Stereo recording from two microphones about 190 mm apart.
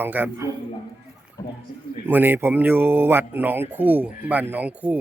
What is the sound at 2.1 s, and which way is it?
A man's voice, 10° right (ahead or behind).